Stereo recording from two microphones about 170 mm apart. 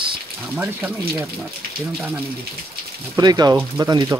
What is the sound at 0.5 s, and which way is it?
Speech, 10° right (ahead or behind).